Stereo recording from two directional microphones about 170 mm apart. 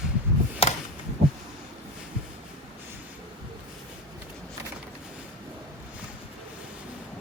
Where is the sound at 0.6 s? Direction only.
35° left (ahead or behind).